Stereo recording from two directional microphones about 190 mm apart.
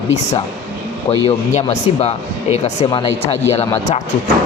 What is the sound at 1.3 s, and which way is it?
A man's voice, 35° left (ahead or behind).